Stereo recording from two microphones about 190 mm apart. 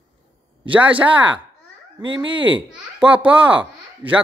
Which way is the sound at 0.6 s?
10° right (ahead or behind).